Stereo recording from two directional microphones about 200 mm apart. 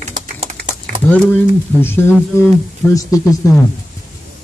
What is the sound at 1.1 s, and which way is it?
Speech, 10° left (ahead or behind).